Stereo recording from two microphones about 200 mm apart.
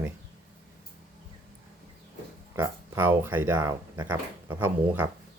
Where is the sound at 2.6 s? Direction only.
10° right (ahead or behind).